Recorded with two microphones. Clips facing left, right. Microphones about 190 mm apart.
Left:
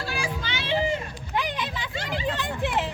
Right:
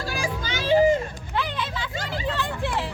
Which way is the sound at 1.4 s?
15° left (ahead or behind).